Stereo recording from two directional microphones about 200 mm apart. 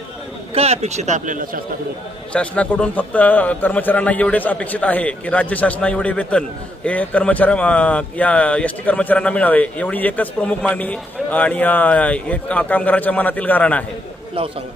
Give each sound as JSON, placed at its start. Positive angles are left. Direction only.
{"t": 0.6, "sound": "speech", "side_deg": -35}
{"t": 2.3, "sound": "a man's voice", "side_deg": 5}